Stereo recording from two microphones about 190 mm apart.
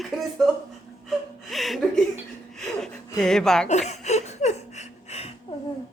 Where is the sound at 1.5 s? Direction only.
Centre (ahead or behind).